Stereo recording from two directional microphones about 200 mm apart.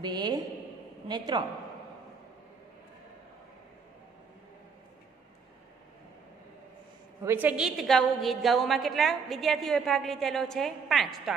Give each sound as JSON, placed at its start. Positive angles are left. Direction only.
{"t": 0.0, "sound": "a man's voice", "side_deg": -20}
{"t": 7.2, "sound": "a woman's voice", "side_deg": -10}